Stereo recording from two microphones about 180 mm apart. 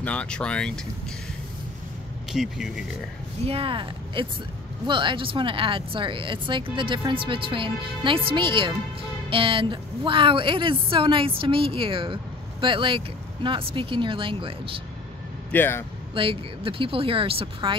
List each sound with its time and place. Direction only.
0.0 s speech: 5° left (ahead or behind)
2.3 s speech: centre (ahead or behind)
3.4 s a woman's voice: 30° right (ahead or behind)
15.5 s speech: 10° left (ahead or behind)
16.2 s speech: 30° right (ahead or behind)